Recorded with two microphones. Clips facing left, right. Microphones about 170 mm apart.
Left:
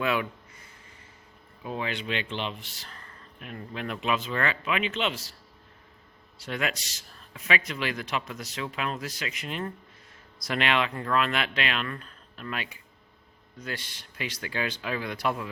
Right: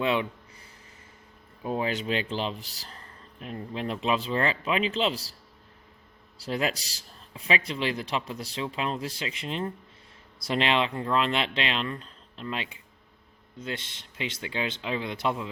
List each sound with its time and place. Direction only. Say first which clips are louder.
0.0 s a man's voice: right 1 dB; 25° right (ahead or behind)
1.6 s speech: right 4 dB; 40° right (ahead or behind)
6.4 s a man's voice: right 3 dB; 35° right (ahead or behind)